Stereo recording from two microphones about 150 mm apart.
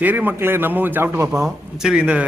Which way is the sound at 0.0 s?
10° right (ahead or behind).